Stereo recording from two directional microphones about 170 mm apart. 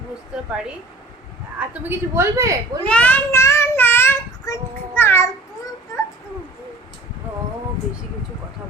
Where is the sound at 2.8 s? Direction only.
10° left (ahead or behind).